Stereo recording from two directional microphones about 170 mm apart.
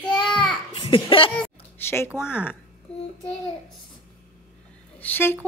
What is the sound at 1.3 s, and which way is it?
Music, 10° left (ahead or behind).